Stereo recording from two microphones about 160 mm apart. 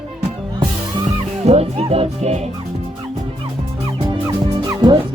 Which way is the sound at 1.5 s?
40° right (ahead or behind).